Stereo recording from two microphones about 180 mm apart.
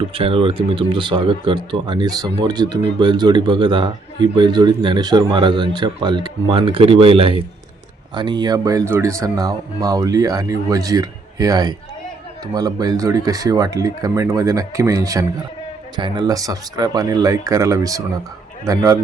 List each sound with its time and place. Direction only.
0.1 s a man's voice: 30° right (ahead or behind)